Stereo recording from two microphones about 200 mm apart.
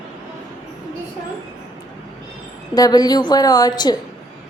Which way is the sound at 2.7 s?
20° left (ahead or behind).